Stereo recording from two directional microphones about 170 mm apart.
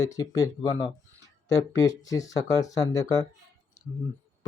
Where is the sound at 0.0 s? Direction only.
20° left (ahead or behind).